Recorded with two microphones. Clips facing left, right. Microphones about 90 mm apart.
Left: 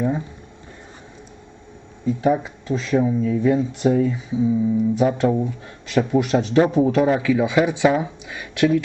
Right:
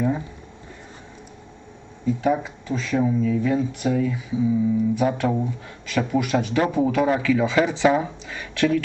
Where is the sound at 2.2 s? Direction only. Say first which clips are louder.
Left 4 dB; 15° left (ahead or behind).